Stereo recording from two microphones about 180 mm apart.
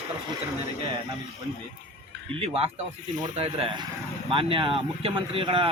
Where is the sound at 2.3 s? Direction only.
35° right (ahead or behind).